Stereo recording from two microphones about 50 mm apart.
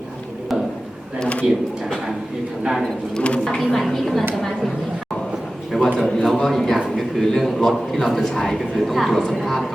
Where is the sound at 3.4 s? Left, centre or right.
Centre.